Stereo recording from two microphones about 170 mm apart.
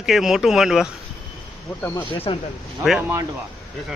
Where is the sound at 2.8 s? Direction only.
Centre (ahead or behind).